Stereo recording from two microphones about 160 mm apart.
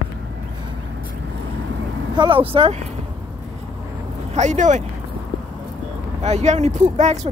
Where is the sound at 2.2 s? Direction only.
35° right (ahead or behind).